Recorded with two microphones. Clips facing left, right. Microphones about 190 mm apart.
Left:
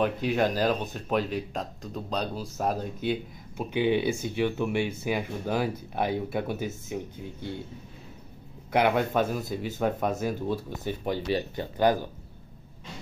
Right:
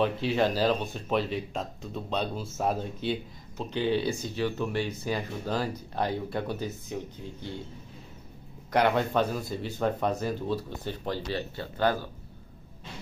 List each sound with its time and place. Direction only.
0.3 s speech: 10° left (ahead or behind)
3.1 s speech: 10° left (ahead or behind)
8.7 s speech: 10° left (ahead or behind)